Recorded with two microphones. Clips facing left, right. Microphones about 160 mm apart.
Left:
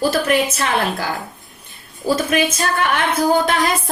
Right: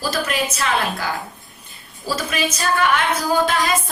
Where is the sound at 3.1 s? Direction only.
55° left (ahead or behind).